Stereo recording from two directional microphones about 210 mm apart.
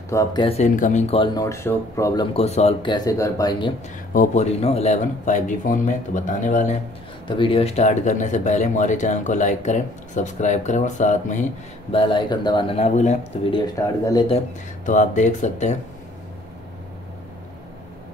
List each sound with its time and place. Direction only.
0.1 s speech: 15° left (ahead or behind)
2.3 s speech: 30° left (ahead or behind)
4.1 s speech: 35° left (ahead or behind)
7.2 s speech: 25° left (ahead or behind)
11.9 s speech: 25° left (ahead or behind)
13.6 s speech: 15° left (ahead or behind)
14.9 s speech: 35° left (ahead or behind)